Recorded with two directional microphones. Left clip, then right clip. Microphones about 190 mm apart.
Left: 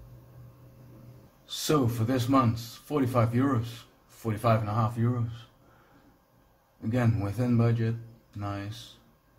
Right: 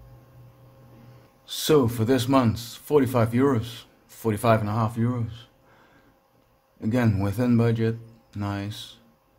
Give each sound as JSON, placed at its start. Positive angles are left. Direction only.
{"t": 1.4, "sound": "speech", "side_deg": -55}
{"t": 6.9, "sound": "a man's voice", "side_deg": -55}